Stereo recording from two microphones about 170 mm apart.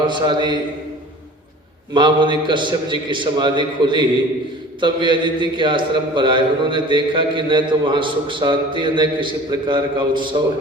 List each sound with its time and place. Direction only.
0.0 s a man's voice: 25° right (ahead or behind)
1.9 s a man's voice: 25° right (ahead or behind)